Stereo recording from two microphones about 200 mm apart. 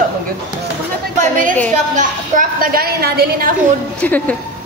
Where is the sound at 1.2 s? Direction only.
40° right (ahead or behind).